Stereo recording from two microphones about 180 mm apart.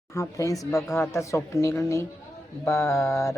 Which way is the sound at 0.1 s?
15° left (ahead or behind).